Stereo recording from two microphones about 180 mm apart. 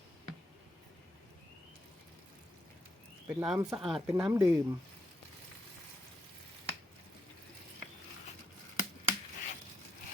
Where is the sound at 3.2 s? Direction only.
5° right (ahead or behind).